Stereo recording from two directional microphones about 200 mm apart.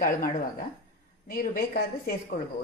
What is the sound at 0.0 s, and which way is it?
A woman's voice, 45° left (ahead or behind).